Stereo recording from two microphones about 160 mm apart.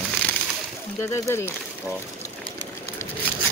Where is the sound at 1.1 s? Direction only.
15° left (ahead or behind).